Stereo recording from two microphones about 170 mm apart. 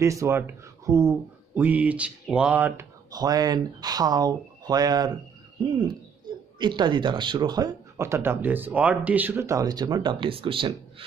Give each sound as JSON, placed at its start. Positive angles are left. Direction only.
{"t": 0.0, "sound": "speech", "side_deg": -15}
{"t": 3.1, "sound": "speech", "side_deg": -20}
{"t": 6.6, "sound": "speech", "side_deg": -25}